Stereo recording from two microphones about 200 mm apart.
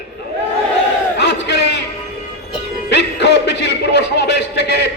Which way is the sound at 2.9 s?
60° left (ahead or behind).